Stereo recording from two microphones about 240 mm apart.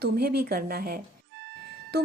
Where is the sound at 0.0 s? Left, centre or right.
Right.